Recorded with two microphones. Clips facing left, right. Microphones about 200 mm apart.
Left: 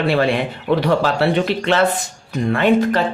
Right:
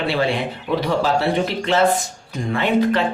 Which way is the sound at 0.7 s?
65° left (ahead or behind).